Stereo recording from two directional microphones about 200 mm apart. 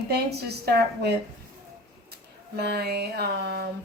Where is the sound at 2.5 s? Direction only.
55° right (ahead or behind).